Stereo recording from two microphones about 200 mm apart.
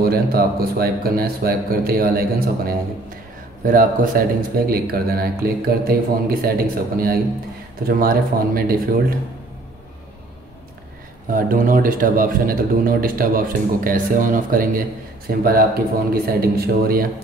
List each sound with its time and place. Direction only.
0.0 s speech: 50° right (ahead or behind)
11.3 s speech: 45° right (ahead or behind)